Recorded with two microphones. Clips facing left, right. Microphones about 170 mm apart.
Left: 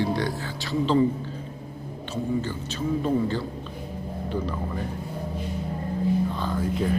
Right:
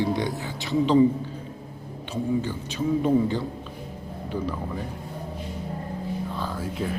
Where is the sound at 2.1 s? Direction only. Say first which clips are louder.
Right 1 dB; 15° right (ahead or behind).